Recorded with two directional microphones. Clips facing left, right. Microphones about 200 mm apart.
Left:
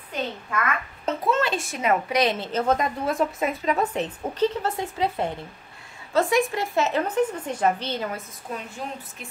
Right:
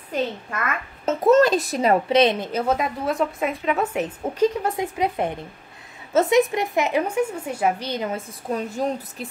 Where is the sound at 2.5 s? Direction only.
5° right (ahead or behind).